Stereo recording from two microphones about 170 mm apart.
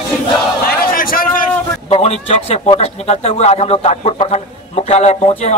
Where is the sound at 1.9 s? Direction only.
35° left (ahead or behind).